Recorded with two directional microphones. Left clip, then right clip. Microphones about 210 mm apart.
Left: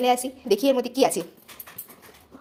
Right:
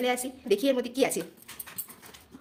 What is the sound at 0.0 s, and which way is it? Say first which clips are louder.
A woman's voice: left 7 dB; 10° left (ahead or behind).